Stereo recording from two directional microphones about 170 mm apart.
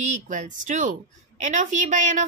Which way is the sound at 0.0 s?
45° right (ahead or behind).